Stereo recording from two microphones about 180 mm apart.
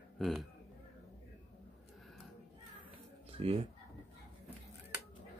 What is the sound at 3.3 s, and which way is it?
Speech, 35° right (ahead or behind).